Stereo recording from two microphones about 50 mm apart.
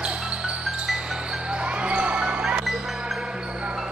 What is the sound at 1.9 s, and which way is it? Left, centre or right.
Basketball bounce, right.